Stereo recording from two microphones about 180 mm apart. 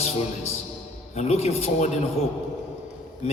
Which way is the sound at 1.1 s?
35° left (ahead or behind).